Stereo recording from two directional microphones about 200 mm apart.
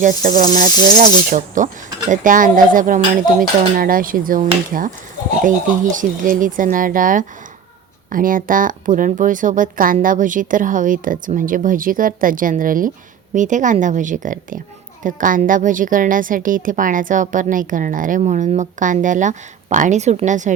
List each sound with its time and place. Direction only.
0.0 s a woman's voice: 40° right (ahead or behind)